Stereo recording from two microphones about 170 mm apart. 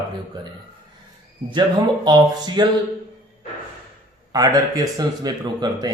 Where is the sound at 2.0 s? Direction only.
25° right (ahead or behind).